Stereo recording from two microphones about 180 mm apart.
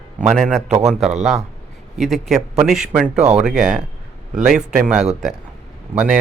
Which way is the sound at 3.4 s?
5° right (ahead or behind).